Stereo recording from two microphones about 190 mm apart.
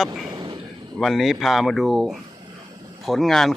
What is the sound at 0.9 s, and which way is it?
A man's voice, centre (ahead or behind).